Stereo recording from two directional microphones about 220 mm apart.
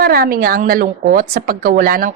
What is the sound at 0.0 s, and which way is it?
A woman's voice, 40° right (ahead or behind).